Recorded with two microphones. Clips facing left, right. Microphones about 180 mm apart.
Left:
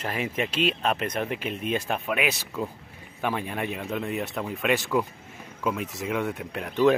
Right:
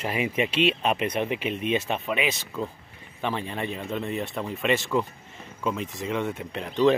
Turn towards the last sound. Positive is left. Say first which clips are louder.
# even
turn(degrees=5)  # may be behind; listen again after turning